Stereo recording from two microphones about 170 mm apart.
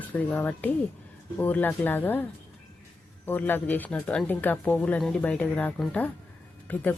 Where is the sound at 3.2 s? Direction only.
10° left (ahead or behind).